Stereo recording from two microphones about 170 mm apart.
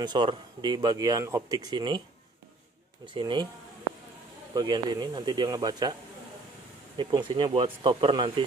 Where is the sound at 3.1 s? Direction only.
25° right (ahead or behind).